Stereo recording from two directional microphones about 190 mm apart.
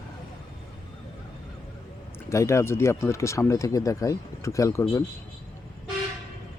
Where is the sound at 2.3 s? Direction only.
15° left (ahead or behind).